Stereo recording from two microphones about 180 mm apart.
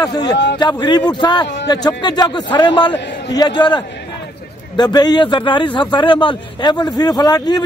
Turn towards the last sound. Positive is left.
turn(degrees=20)  # may be behind; listen again after turning